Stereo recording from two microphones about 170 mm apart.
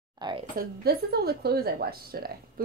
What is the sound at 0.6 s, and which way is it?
A woman's voice, 65° right (ahead or behind).